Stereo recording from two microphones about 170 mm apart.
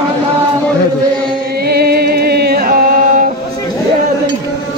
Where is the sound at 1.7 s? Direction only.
65° right (ahead or behind).